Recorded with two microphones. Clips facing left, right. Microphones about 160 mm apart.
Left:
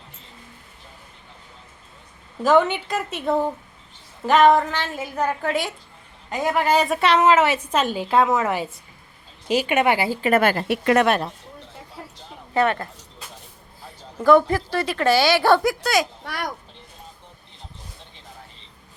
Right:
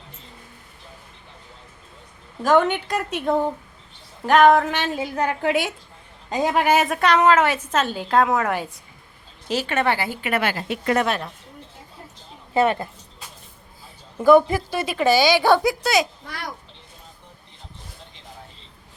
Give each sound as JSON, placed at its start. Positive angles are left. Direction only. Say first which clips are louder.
{"t": 2.4, "sound": "a woman's voice", "louder": "even", "side_deg": 5}
{"t": 4.7, "sound": "a woman's voice", "louder": "right 3 dB", "side_deg": -15}
{"t": 6.3, "sound": "speech", "louder": "right 2 dB", "side_deg": -25}
{"t": 6.7, "sound": "a woman's voice", "louder": "left 2 dB", "side_deg": 0}
{"t": 9.5, "sound": "a woman's voice", "louder": "left 3 dB", "side_deg": 15}
{"t": 10.1, "sound": "a woman's voice", "louder": "left 5 dB", "side_deg": 35}
{"t": 12.5, "sound": "speech", "louder": "right 1 dB", "side_deg": -20}
{"t": 14.3, "sound": "a woman's voice", "louder": "right 1 dB", "side_deg": -10}
{"t": 16.2, "sound": "babbling", "louder": "left 5 dB", "side_deg": 60}